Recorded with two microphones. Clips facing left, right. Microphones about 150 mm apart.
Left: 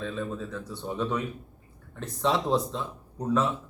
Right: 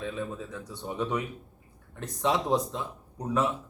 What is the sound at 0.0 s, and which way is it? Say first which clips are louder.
A man's voice: left 2 dB; 15° right (ahead or behind).